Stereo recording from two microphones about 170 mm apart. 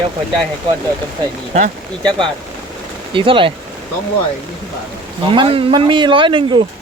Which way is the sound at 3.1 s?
30° right (ahead or behind).